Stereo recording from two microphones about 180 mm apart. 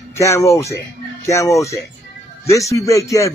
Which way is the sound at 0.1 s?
15° left (ahead or behind).